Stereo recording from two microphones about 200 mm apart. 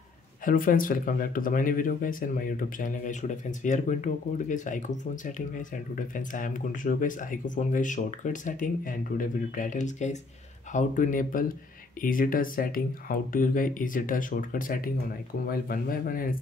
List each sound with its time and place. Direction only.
0.5 s speech: 45° left (ahead or behind)